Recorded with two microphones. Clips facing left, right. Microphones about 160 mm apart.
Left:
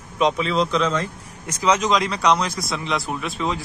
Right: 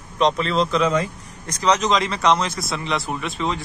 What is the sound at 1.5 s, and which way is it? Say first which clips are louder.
Speech: even; centre (ahead or behind).